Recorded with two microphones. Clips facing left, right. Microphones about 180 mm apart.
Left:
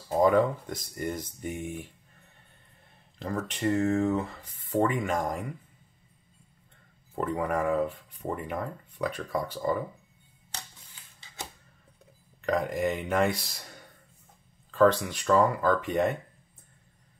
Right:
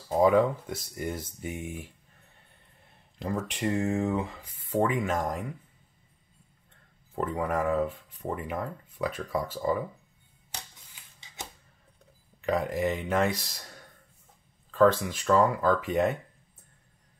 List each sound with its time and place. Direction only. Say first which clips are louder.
0.1 s speech: right 1 dB; 5° right (ahead or behind)
3.2 s speech: right 1 dB; 10° right (ahead or behind)
7.2 s speech: even; centre (ahead or behind)
12.4 s speech: even; 5° right (ahead or behind)